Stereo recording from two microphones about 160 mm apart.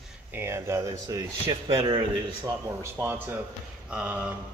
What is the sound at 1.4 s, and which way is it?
Speech, 35° right (ahead or behind).